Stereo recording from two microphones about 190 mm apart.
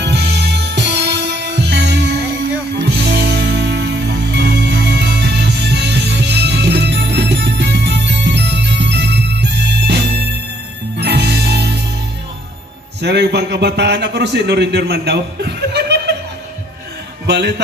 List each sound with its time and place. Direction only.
0.0 s music: 60° right (ahead or behind)
11.0 s music: 60° right (ahead or behind)
13.0 s a man's voice: 60° right (ahead or behind)
17.3 s a man's voice: 60° right (ahead or behind)